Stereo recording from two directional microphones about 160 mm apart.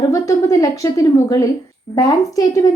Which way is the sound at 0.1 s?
20° left (ahead or behind).